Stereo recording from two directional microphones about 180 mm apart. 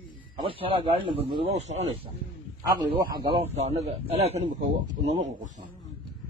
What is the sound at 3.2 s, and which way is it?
Speech, 35° right (ahead or behind).